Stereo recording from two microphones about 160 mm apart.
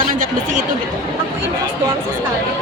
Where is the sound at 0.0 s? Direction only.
55° right (ahead or behind).